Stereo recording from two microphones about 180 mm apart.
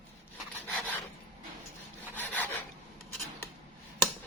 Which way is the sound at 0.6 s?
10° left (ahead or behind).